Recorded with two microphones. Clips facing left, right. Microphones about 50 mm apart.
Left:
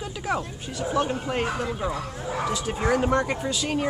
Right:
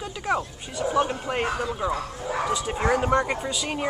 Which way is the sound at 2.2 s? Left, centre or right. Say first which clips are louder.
Right 1 dB; centre.